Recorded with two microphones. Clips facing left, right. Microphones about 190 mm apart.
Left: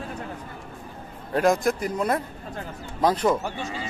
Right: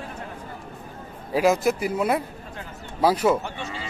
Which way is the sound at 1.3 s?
5° right (ahead or behind).